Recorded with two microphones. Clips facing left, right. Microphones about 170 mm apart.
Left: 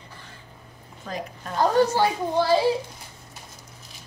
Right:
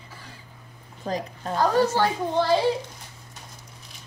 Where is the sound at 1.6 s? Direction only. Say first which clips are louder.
Left 1 dB; 15° left (ahead or behind).